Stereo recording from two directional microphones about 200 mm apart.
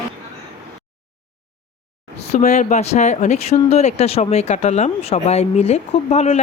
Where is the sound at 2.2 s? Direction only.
35° left (ahead or behind).